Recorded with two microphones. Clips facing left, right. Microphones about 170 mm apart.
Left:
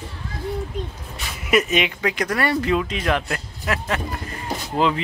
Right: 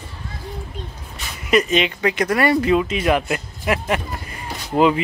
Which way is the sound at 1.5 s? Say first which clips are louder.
Right 2 dB; 5° left (ahead or behind).